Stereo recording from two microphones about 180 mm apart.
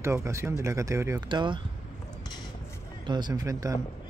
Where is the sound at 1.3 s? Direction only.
25° right (ahead or behind).